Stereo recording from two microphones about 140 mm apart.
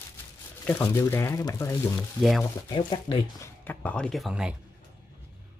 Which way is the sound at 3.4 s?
15° left (ahead or behind).